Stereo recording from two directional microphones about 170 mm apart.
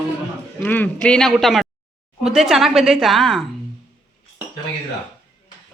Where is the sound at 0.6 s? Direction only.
10° left (ahead or behind).